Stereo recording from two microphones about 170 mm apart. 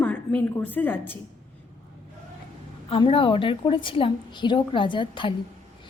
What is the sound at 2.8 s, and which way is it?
A woman's voice, 30° left (ahead or behind).